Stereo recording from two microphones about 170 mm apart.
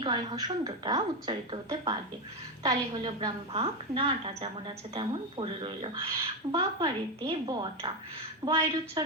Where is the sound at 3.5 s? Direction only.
35° right (ahead or behind).